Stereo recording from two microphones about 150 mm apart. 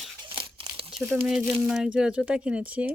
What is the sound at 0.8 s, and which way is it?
Speech, 5° right (ahead or behind).